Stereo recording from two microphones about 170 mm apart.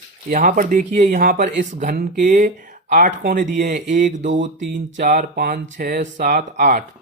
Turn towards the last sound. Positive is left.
turn(degrees=-55)  # may be behind; listen again after turning